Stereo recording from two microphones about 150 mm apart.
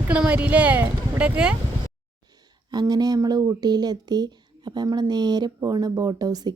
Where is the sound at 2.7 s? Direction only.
25° right (ahead or behind).